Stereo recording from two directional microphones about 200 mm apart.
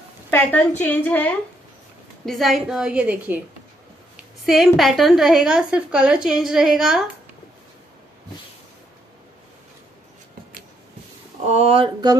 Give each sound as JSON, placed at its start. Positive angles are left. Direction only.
{"t": 0.3, "sound": "a woman's voice", "side_deg": 10}
{"t": 11.4, "sound": "speech", "side_deg": -30}